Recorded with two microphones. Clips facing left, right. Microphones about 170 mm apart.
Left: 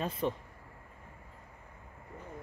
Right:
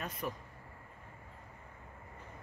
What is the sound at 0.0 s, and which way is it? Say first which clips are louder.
Speech: left 7 dB; 30° left (ahead or behind).